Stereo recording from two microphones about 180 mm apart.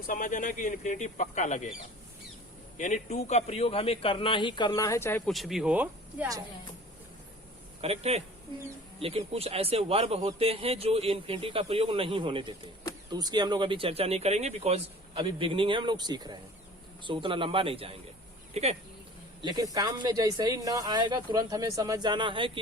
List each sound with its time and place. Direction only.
0.1 s speech: 45° left (ahead or behind)
2.7 s a man's voice: 40° left (ahead or behind); by 5.3 s 10° left (ahead or behind)
5.3 s speech: centre (ahead or behind)
7.8 s a man's voice: 35° right (ahead or behind)
19.4 s speech: 25° right (ahead or behind)